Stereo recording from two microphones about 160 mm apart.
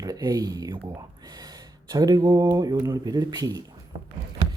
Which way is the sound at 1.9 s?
25° right (ahead or behind).